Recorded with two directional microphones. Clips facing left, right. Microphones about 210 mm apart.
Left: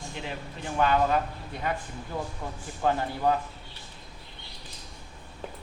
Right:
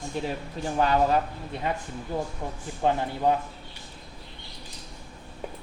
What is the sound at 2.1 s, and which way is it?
Speech, 30° right (ahead or behind).